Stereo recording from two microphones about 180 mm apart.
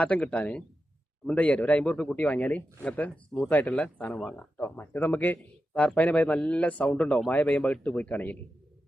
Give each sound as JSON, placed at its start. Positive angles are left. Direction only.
{"t": 0.0, "sound": "a man's voice", "side_deg": 5}